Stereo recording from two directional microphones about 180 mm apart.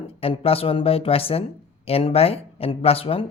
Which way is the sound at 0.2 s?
30° left (ahead or behind).